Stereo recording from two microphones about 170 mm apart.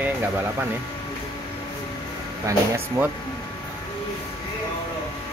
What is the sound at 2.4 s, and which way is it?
Speech, 15° right (ahead or behind).